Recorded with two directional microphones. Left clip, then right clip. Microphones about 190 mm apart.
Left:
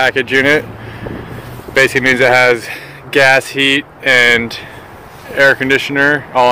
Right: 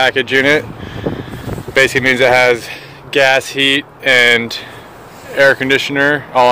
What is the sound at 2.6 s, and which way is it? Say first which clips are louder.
Speech: left 2 dB; 5° left (ahead or behind).